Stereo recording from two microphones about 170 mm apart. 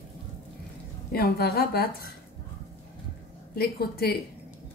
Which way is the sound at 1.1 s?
65° left (ahead or behind).